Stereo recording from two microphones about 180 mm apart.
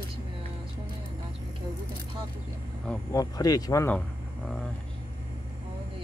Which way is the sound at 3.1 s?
20° left (ahead or behind).